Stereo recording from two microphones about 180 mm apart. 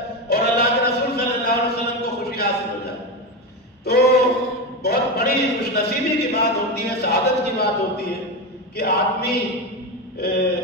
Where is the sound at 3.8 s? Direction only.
60° left (ahead or behind).